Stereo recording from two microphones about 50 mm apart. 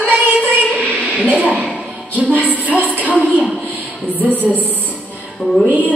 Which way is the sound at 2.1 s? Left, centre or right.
Right.